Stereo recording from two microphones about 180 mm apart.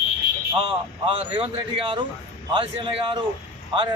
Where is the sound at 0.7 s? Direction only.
30° right (ahead or behind).